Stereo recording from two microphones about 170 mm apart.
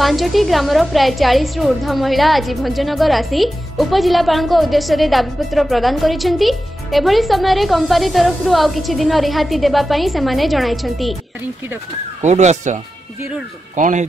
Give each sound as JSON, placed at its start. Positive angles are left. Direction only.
{"t": 0.0, "sound": "a woman's voice", "side_deg": 0}
{"t": 12.2, "sound": "speech", "side_deg": -45}